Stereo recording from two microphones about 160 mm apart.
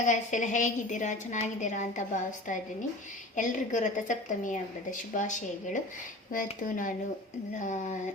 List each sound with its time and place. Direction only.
0.0 s a woman's voice: 50° left (ahead or behind)